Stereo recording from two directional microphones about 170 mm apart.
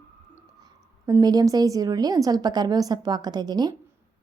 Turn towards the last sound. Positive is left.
turn(degrees=-25)  # may be behind; listen again after turning